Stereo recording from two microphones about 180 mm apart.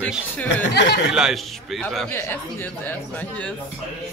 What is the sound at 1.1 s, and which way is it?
Speech, centre (ahead or behind).